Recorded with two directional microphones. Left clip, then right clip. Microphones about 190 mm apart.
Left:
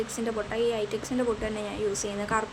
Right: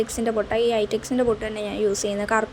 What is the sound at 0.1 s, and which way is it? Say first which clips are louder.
A woman's voice: right 8 dB; 30° right (ahead or behind).